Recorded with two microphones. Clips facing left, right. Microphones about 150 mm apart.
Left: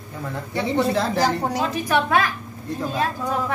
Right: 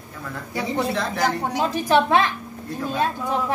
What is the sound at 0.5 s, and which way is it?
A woman's voice, centre (ahead or behind).